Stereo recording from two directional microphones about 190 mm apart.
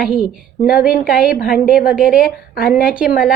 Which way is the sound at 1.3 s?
50° left (ahead or behind).